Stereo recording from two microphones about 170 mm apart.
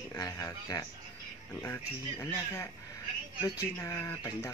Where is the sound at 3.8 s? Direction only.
15° left (ahead or behind).